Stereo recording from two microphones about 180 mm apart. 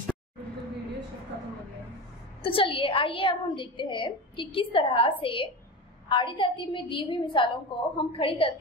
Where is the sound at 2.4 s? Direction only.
30° left (ahead or behind).